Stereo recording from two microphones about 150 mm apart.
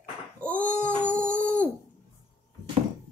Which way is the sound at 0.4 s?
10° left (ahead or behind).